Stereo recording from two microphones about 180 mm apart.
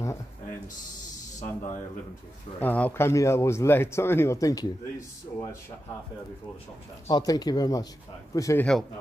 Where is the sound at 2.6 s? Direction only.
10° left (ahead or behind).